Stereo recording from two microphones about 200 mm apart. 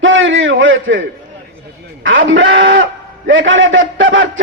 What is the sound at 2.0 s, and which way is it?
A man's voice, 75° right (ahead or behind).